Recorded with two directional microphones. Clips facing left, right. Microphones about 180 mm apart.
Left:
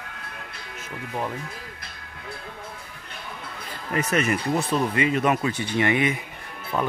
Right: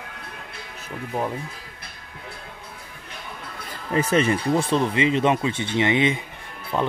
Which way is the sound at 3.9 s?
30° right (ahead or behind).